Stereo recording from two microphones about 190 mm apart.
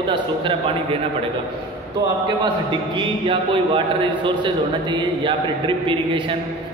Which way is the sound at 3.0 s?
25° right (ahead or behind).